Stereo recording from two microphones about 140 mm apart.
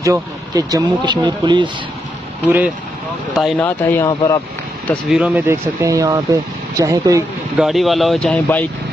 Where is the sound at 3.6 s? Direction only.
15° left (ahead or behind).